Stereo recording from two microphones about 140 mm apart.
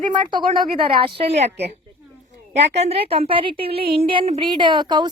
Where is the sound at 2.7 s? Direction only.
45° right (ahead or behind).